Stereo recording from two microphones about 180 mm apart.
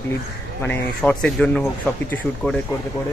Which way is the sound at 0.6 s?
10° left (ahead or behind).